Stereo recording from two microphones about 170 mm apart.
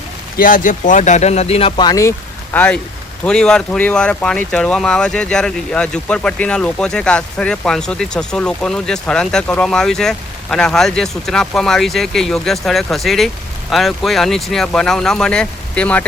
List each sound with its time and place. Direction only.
0.3 s speech: 55° left (ahead or behind); by 16.0 s 5° left (ahead or behind)